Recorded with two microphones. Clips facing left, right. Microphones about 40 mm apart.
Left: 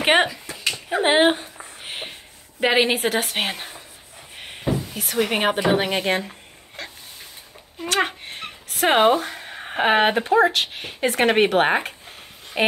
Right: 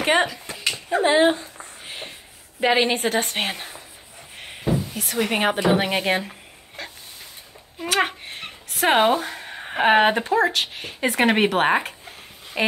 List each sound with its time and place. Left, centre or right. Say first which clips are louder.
0.0 s speech: left 2 dB; left
1.8 s a sound: left 3 dB; left
2.6 s speech: left 1 dB; centre
7.8 s speech: even; centre
12.6 s speech: left 2 dB; left